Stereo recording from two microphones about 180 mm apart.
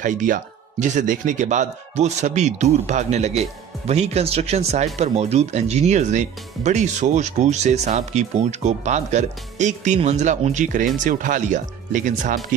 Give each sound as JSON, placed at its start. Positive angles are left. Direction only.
{"t": 0.0, "sound": "speech", "side_deg": -45}